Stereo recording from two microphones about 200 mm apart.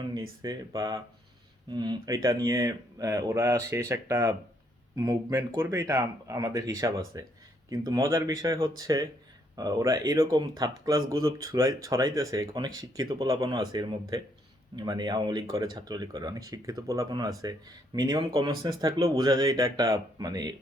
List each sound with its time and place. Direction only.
0.0 s speech: 20° right (ahead or behind)